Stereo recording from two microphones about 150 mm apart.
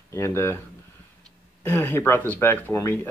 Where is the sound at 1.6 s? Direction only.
15° left (ahead or behind).